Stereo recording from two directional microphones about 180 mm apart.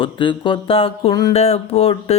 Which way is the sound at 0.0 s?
25° left (ahead or behind).